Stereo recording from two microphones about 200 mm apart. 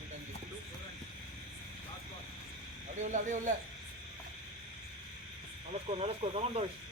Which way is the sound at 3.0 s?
40° right (ahead or behind).